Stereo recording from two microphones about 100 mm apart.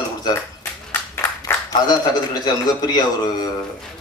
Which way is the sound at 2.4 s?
45° left (ahead or behind).